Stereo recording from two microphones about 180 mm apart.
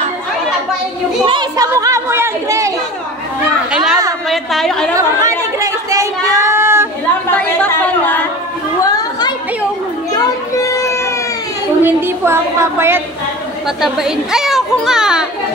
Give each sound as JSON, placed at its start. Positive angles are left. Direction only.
{"t": 1.2, "sound": "speech", "side_deg": -25}
{"t": 3.7, "sound": "a woman's voice", "side_deg": -5}
{"t": 4.9, "sound": "chatter", "side_deg": -20}
{"t": 7.3, "sound": "chatter", "side_deg": 10}
{"t": 8.8, "sound": "chatter", "side_deg": 20}
{"t": 10.1, "sound": "music", "side_deg": 20}
{"t": 11.8, "sound": "speech", "side_deg": -15}
{"t": 13.7, "sound": "speech", "side_deg": 0}